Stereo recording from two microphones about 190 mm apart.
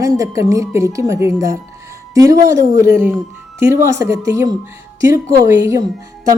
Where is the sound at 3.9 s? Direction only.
15° right (ahead or behind).